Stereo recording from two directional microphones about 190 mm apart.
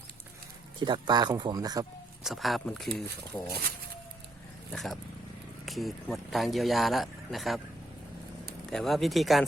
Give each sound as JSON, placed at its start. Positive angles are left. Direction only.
{"t": 0.8, "sound": "speech", "side_deg": -25}
{"t": 2.2, "sound": "speech", "side_deg": 0}
{"t": 4.7, "sound": "speech", "side_deg": 0}
{"t": 8.7, "sound": "speech", "side_deg": 0}